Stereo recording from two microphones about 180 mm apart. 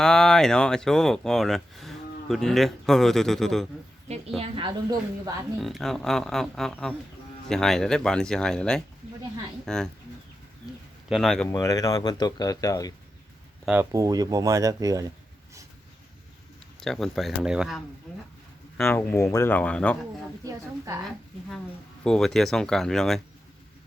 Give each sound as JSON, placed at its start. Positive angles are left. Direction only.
{"t": 0.0, "sound": "speech", "side_deg": 5}
{"t": 4.4, "sound": "speech", "side_deg": -25}
{"t": 5.5, "sound": "speech", "side_deg": 0}
{"t": 11.1, "sound": "speech", "side_deg": 0}
{"t": 11.5, "sound": "speech", "side_deg": 20}
{"t": 13.7, "sound": "speech", "side_deg": -15}
{"t": 16.8, "sound": "speech", "side_deg": 0}
{"t": 18.8, "sound": "speech", "side_deg": 10}
{"t": 20.4, "sound": "speech", "side_deg": -20}
{"t": 22.0, "sound": "speech", "side_deg": 5}